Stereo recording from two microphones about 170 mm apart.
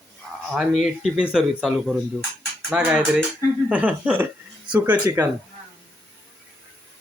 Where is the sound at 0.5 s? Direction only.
5° right (ahead or behind).